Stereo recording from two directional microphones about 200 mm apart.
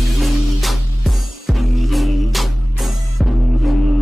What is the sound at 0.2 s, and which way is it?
Music, centre (ahead or behind).